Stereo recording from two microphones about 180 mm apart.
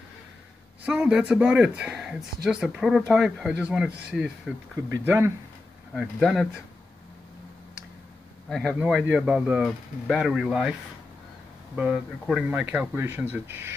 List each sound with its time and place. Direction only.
0.8 s speech: 5° right (ahead or behind)
5.9 s speech: centre (ahead or behind)
8.5 s speech: centre (ahead or behind)
11.7 s speech: 5° right (ahead or behind)